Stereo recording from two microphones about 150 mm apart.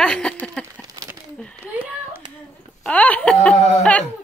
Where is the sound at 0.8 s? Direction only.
20° right (ahead or behind).